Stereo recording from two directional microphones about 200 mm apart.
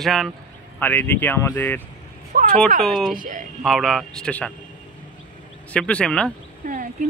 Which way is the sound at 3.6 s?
Centre (ahead or behind).